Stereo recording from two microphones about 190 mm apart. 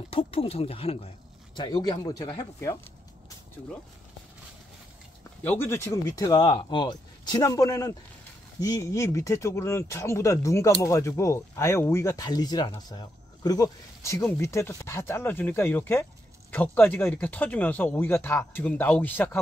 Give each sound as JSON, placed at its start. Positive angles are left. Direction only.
{"t": 0.1, "sound": "speech", "side_deg": 30}
{"t": 5.4, "sound": "speech", "side_deg": 10}